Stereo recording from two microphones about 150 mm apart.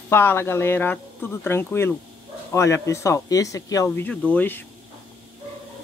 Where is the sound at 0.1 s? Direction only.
15° left (ahead or behind).